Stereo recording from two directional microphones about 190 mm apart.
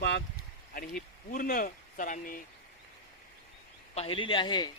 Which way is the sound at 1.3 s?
45° left (ahead or behind).